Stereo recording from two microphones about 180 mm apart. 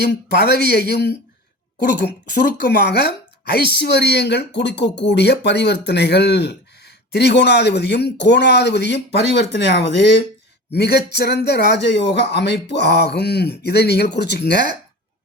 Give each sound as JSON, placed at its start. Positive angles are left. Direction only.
{"t": 0.0, "sound": "speech", "side_deg": 70}